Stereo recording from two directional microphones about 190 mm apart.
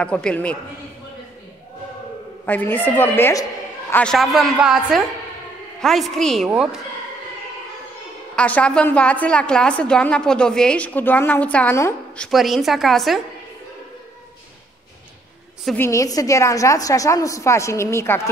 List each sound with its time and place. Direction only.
0.0 s a man's voice: 5° left (ahead or behind)
2.4 s a woman's voice: 10° left (ahead or behind)
8.4 s a woman's voice: 5° left (ahead or behind)
12.3 s a man's voice: centre (ahead or behind)
15.6 s a woman's voice: 10° left (ahead or behind)